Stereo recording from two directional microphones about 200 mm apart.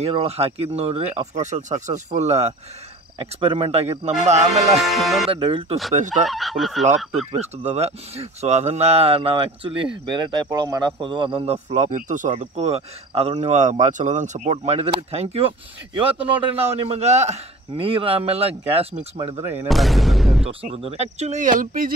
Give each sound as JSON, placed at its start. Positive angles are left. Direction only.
{"t": 0.0, "sound": "speech", "side_deg": -30}
{"t": 4.9, "sound": "speech", "side_deg": 0}
{"t": 5.3, "sound": "a man's voice", "side_deg": -25}
{"t": 5.9, "sound": "speech", "side_deg": -35}
{"t": 6.2, "sound": "speech", "side_deg": 0}
{"t": 7.3, "sound": "a man's voice", "side_deg": -35}
{"t": 16.5, "sound": "a man's voice", "side_deg": -30}
{"t": 19.7, "sound": "speech", "side_deg": 0}
{"t": 20.4, "sound": "speech", "side_deg": -30}